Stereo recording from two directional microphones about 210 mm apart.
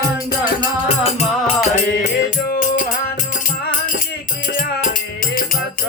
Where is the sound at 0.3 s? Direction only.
20° left (ahead or behind).